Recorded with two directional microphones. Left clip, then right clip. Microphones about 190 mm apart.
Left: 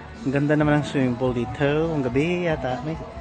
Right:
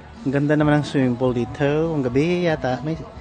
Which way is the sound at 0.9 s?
30° right (ahead or behind).